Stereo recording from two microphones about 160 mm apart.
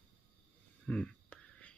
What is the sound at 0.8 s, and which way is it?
Whispering, 5° left (ahead or behind).